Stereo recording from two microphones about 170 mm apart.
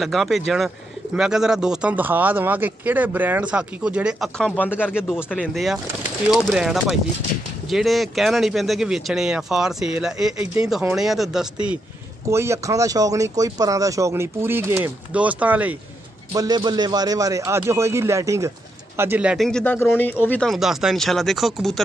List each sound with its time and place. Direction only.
0.0 s speech: centre (ahead or behind)
4.6 s speech: 10° left (ahead or behind)
4.9 s speech: 5° right (ahead or behind)
12.3 s speech: 15° right (ahead or behind)
16.3 s a man's voice: 25° right (ahead or behind); by 21.8 s centre (ahead or behind)